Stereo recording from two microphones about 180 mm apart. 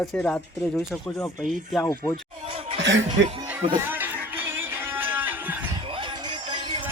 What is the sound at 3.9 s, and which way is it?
Music, 10° right (ahead or behind).